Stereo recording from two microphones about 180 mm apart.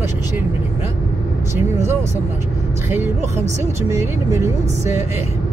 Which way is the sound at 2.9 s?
10° right (ahead or behind).